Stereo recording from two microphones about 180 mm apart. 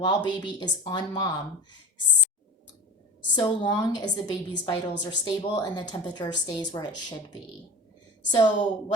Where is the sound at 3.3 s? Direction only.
25° left (ahead or behind).